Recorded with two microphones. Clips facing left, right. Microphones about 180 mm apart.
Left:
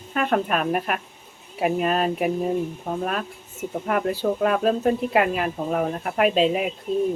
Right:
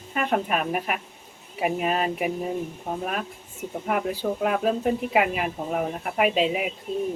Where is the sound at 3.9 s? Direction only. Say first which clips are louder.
Left 3 dB; 10° right (ahead or behind).